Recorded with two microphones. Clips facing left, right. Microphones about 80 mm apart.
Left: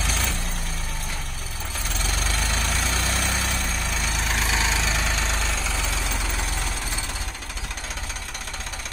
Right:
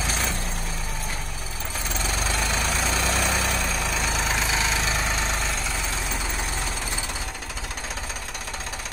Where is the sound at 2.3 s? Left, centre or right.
Right.